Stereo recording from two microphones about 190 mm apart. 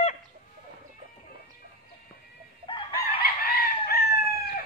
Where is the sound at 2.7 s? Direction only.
25° left (ahead or behind).